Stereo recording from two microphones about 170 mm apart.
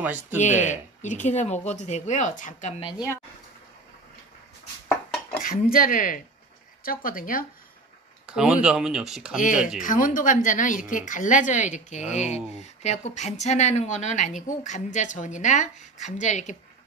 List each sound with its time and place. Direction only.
0.0 s speech: 10° right (ahead or behind)
0.4 s a woman's voice: 45° left (ahead or behind)
4.8 s dishes: 10° left (ahead or behind)
5.4 s speech: 55° left (ahead or behind)
8.3 s speech: 5° right (ahead or behind)
9.4 s a woman's voice: 50° left (ahead or behind)